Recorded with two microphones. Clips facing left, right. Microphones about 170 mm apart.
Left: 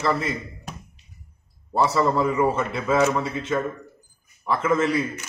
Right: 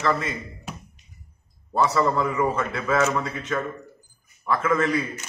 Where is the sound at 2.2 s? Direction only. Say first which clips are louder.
Left 2 dB; 30° left (ahead or behind).